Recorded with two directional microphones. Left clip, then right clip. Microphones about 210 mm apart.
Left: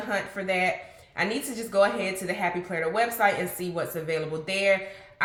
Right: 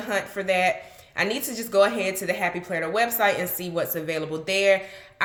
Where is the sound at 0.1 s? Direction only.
45° right (ahead or behind).